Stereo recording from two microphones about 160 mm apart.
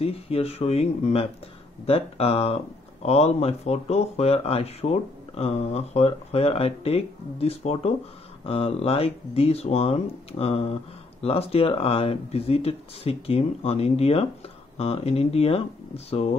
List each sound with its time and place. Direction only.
0.0 s speech: 40° left (ahead or behind)